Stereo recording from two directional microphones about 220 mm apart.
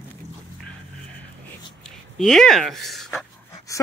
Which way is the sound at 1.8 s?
Centre (ahead or behind).